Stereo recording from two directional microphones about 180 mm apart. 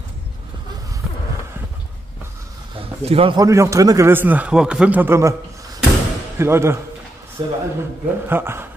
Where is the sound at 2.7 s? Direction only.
30° right (ahead or behind).